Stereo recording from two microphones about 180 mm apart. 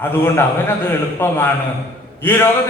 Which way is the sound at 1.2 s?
10° left (ahead or behind).